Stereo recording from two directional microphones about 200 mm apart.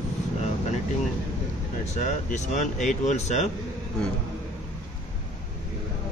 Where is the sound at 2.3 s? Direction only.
35° left (ahead or behind).